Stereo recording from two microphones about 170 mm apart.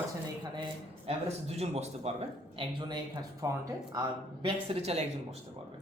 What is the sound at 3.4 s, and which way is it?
Speech, 20° right (ahead or behind).